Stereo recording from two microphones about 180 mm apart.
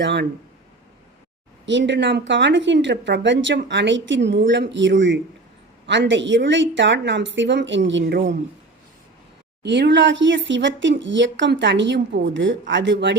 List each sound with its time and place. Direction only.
0.0 s speech: 75° right (ahead or behind)
1.6 s speech: 85° right
5.8 s speech: 80° right
9.6 s speech: 80° right